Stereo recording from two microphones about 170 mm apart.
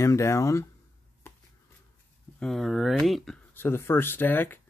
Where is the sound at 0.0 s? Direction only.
15° left (ahead or behind).